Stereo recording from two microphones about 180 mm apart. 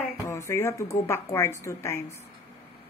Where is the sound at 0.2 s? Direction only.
15° left (ahead or behind).